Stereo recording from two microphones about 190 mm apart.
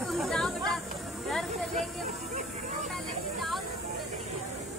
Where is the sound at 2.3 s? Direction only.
40° right (ahead or behind).